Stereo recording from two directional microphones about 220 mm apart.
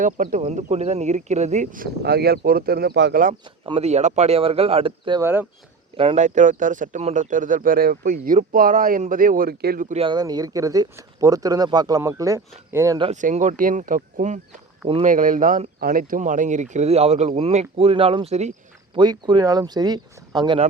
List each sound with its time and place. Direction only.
0.0 s speech: 35° right (ahead or behind)
3.4 s speech: 25° right (ahead or behind)
5.2 s speech: 10° right (ahead or behind)
6.0 s speech: 30° right (ahead or behind)
13.1 s speech: 30° right (ahead or behind)